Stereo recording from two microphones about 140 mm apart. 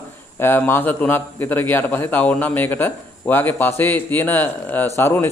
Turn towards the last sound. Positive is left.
turn(degrees=15)  # may be behind; listen again after turning